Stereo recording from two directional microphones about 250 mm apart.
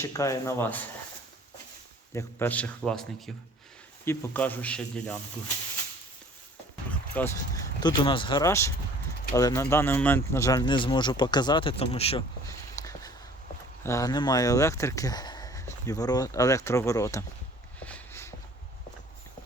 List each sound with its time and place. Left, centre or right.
0.0 s speech: centre
2.1 s a man's voice: centre
6.9 s speech: centre
12.5 s a sound: centre
13.8 s speech: centre
17.7 s a sound: centre